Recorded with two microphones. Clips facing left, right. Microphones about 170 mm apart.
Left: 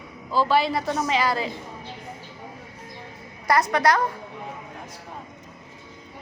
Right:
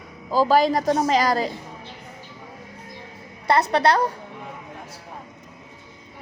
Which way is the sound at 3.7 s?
30° right (ahead or behind).